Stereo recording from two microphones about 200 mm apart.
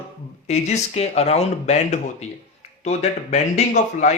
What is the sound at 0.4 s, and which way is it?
Speech, 35° left (ahead or behind).